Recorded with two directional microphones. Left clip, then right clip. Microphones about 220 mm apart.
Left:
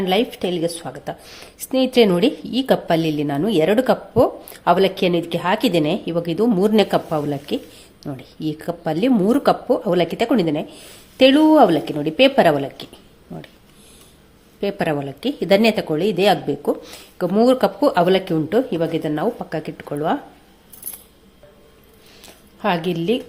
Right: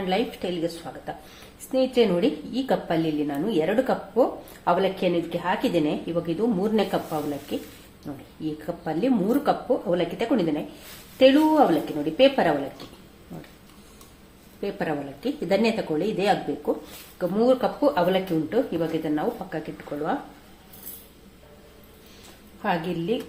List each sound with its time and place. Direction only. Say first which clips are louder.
0.1 s a woman's voice: left 6 dB; 45° left (ahead or behind)
14.6 s a woman's voice: left 7 dB; 45° left (ahead or behind)
22.6 s a woman's voice: left 6 dB; 40° left (ahead or behind)